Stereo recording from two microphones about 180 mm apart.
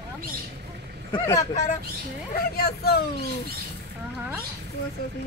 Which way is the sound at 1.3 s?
40° left (ahead or behind).